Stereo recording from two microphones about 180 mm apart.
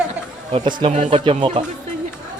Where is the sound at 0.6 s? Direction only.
30° right (ahead or behind).